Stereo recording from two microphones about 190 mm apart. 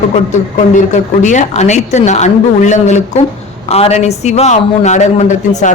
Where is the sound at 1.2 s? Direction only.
40° left (ahead or behind).